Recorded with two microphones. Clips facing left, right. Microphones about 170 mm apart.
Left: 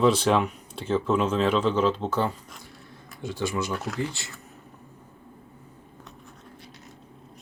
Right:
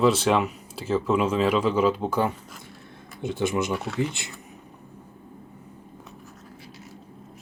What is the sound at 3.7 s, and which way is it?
Speech, centre (ahead or behind).